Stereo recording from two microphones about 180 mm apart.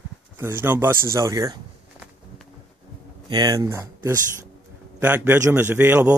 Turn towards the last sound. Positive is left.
turn(degrees=-10)  # may be behind; listen again after turning